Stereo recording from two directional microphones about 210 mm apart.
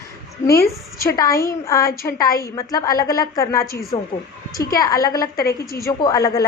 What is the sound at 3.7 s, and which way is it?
Speech, 45° left (ahead or behind).